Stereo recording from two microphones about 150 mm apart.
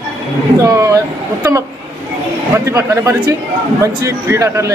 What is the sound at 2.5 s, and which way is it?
A man's voice, 15° right (ahead or behind).